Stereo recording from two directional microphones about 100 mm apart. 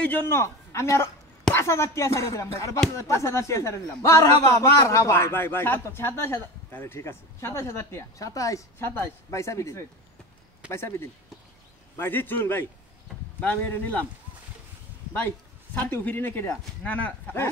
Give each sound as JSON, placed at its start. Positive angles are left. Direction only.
{"t": 0.0, "sound": "a man's voice", "side_deg": 20}
{"t": 8.7, "sound": "a man's voice", "side_deg": 20}
{"t": 12.0, "sound": "a man's voice", "side_deg": 20}
{"t": 15.1, "sound": "a man's voice", "side_deg": 15}